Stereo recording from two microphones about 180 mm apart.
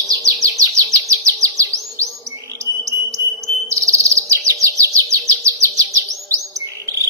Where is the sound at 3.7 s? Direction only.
15° right (ahead or behind).